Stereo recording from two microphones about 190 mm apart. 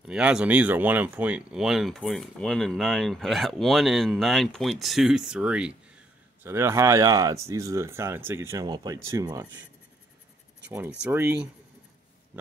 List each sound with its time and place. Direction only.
0.1 s speech: 5° right (ahead or behind)
11.1 s speech: 15° right (ahead or behind)